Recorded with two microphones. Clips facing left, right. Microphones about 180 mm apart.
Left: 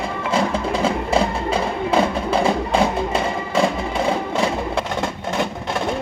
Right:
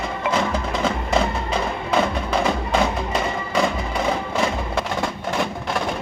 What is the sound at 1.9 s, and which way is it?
Music, 30° left (ahead or behind).